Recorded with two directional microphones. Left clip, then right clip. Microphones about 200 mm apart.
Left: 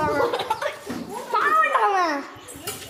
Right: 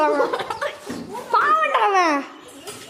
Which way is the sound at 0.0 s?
35° right (ahead or behind).